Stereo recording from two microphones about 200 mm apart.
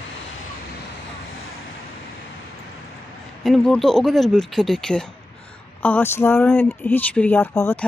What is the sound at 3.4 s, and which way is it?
Speech, centre (ahead or behind).